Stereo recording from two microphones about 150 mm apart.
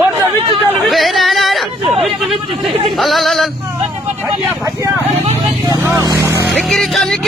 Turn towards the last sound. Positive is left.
turn(degrees=0)  # may be behind; listen again after turning